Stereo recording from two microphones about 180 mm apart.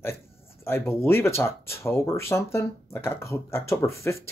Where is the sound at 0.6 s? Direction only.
15° left (ahead or behind).